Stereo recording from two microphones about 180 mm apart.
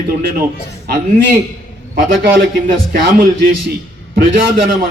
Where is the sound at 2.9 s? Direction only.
55° right (ahead or behind).